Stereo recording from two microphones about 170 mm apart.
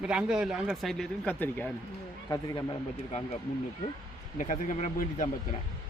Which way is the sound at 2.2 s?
20° left (ahead or behind).